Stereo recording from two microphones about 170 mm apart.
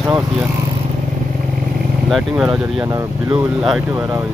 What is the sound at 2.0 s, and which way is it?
Speech, centre (ahead or behind).